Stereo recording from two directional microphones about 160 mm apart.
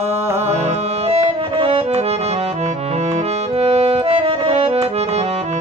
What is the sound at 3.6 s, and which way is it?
Music, 35° right (ahead or behind).